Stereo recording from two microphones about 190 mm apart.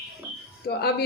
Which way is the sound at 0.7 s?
60° left (ahead or behind).